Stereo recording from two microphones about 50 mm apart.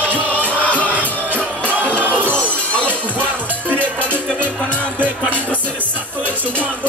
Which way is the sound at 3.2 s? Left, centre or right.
Right.